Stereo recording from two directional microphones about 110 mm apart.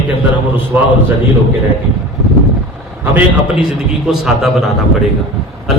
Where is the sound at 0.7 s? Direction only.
20° right (ahead or behind).